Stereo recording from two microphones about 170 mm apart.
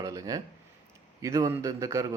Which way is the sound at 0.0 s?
20° right (ahead or behind).